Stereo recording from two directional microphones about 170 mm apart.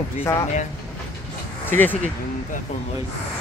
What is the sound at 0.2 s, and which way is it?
Speech, 15° left (ahead or behind).